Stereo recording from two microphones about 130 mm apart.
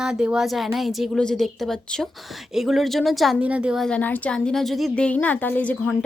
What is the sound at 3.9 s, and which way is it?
A woman's voice, 10° left (ahead or behind).